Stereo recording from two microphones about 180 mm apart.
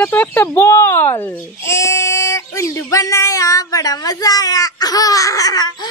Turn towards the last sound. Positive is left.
turn(degrees=20)  # may be behind; listen again after turning